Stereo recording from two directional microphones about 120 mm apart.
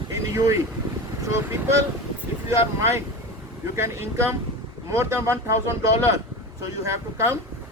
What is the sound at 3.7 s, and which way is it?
Speech, 20° right (ahead or behind).